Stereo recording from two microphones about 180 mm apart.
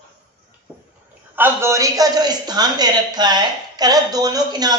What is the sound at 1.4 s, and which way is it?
Speech, 15° right (ahead or behind).